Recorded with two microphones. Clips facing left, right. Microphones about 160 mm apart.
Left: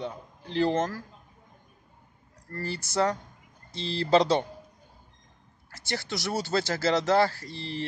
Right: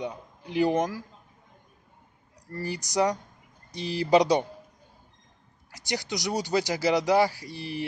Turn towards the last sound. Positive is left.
turn(degrees=-15)  # may be behind; listen again after turning